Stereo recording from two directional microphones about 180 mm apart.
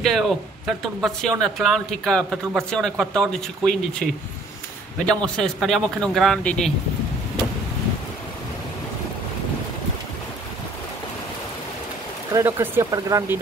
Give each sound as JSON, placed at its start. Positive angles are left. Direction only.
{"t": 0.0, "sound": "speech", "side_deg": 0}
{"t": 12.4, "sound": "speech", "side_deg": -15}